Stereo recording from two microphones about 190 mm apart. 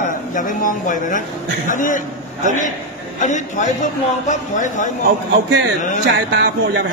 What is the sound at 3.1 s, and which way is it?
A man's voice, 40° left (ahead or behind).